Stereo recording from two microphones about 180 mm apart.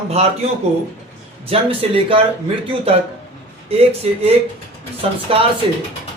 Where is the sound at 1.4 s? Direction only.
30° right (ahead or behind).